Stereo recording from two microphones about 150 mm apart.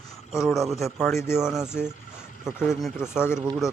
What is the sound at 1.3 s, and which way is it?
Speech, 5° right (ahead or behind).